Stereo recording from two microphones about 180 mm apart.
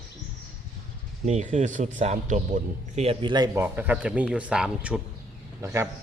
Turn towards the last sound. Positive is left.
turn(degrees=-15)  # may be behind; listen again after turning